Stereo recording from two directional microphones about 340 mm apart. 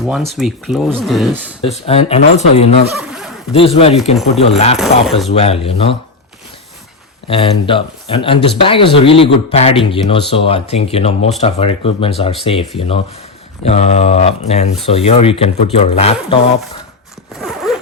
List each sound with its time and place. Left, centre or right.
0.0 s speech: centre
1.7 s mantra: centre
3.0 s a sound: centre
3.5 s speech: centre
7.3 s speech: centre
13.7 s mantra: centre
14.8 s speech: centre
17.4 s zipper: centre